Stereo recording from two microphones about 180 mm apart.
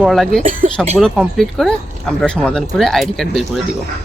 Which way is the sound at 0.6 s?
40° right (ahead or behind).